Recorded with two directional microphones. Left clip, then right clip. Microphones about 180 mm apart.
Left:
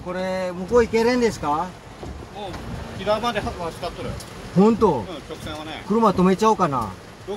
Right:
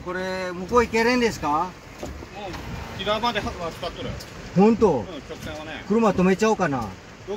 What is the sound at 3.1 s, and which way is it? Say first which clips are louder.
Speech: left 2 dB; 15° left (ahead or behind).